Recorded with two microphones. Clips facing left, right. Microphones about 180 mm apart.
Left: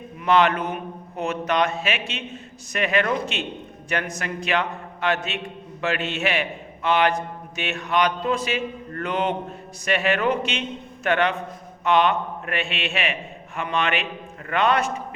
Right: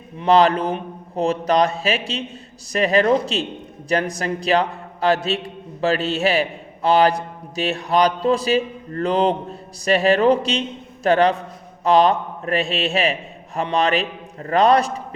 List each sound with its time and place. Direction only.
0.2 s a man's voice: 35° right (ahead or behind)